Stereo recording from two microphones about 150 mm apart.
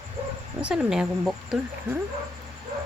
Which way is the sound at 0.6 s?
5° right (ahead or behind).